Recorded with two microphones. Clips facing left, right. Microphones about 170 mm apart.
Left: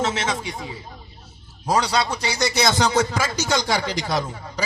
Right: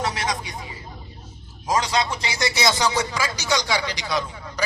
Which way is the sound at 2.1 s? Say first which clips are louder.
Left 3 dB; 55° left (ahead or behind).